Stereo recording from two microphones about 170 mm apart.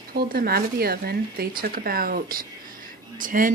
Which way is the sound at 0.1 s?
60° right (ahead or behind).